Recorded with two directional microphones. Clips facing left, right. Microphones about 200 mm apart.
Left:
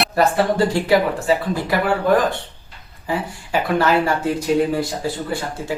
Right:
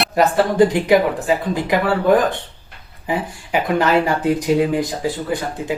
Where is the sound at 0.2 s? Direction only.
20° right (ahead or behind).